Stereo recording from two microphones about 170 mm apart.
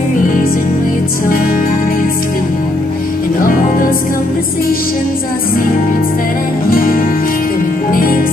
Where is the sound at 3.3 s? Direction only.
55° left (ahead or behind).